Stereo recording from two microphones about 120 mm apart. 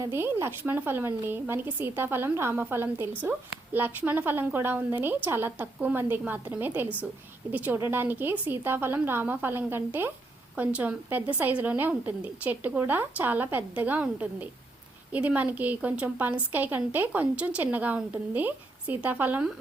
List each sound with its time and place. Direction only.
0.0 s a woman's voice: 20° right (ahead or behind)